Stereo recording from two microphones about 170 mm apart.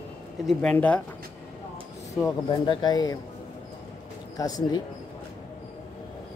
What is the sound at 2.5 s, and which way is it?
Speech, 25° left (ahead or behind).